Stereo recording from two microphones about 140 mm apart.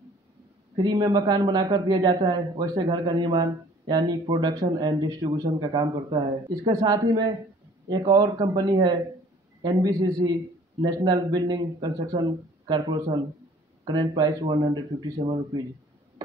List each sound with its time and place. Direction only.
0.8 s a man's voice: 30° right (ahead or behind)